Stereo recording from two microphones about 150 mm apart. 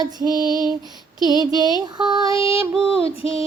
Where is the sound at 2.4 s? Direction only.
40° left (ahead or behind).